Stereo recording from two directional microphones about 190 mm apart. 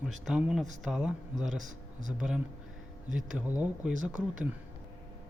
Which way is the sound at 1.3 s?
40° right (ahead or behind).